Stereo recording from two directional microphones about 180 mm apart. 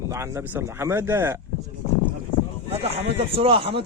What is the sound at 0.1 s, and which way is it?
Speech, 15° right (ahead or behind).